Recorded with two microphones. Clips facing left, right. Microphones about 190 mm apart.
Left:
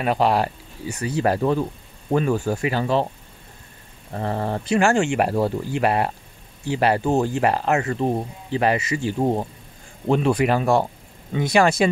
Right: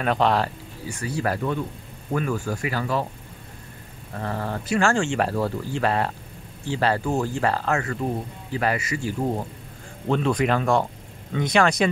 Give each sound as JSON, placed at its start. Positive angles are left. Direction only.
{"t": 0.0, "sound": "speech", "side_deg": 10}
{"t": 0.8, "sound": "speech", "side_deg": 20}
{"t": 4.1, "sound": "speech", "side_deg": 25}
{"t": 10.0, "sound": "speech", "side_deg": 10}